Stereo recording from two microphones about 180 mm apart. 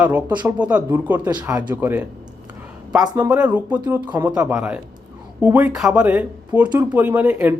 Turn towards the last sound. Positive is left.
turn(degrees=-10)  # may be behind; listen again after turning